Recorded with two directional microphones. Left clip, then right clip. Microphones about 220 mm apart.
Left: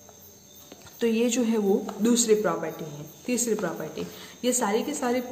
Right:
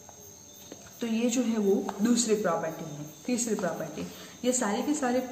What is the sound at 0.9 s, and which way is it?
A man's voice, 45° left (ahead or behind).